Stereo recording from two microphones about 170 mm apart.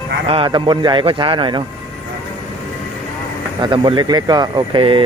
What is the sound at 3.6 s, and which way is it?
Speech, 30° right (ahead or behind).